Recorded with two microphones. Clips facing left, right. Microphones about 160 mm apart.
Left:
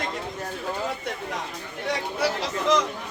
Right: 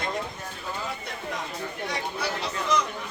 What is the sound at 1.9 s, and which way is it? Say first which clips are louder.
Chatter: left 8 dB; 90° left.